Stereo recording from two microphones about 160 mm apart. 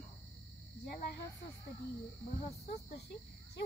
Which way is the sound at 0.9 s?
75° left (ahead or behind).